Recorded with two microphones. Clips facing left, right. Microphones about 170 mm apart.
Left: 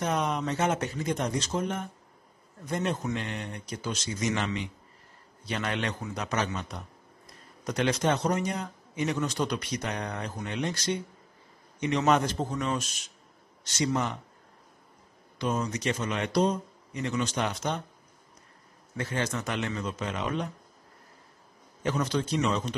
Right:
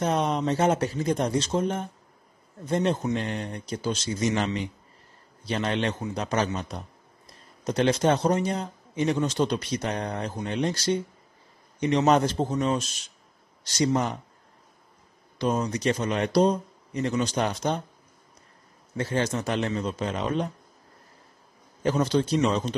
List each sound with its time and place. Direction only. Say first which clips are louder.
0.0 s a man's voice: right 4 dB; 30° right (ahead or behind)
5.5 s a man's voice: right 5 dB; 30° right (ahead or behind)
15.3 s a man's voice: right 4 dB; 35° right (ahead or behind)
18.9 s a man's voice: right 5 dB; 30° right (ahead or behind)
21.8 s a man's voice: right 5 dB; 30° right (ahead or behind)